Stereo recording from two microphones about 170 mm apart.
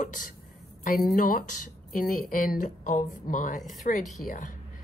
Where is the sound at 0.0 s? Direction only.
50° left (ahead or behind).